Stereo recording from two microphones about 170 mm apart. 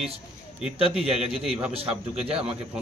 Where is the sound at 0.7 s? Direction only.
35° right (ahead or behind).